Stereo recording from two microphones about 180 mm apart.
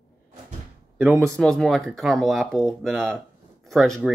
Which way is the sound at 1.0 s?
Centre (ahead or behind).